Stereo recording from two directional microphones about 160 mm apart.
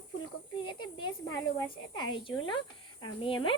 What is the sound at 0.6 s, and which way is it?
A woman's voice, 30° left (ahead or behind).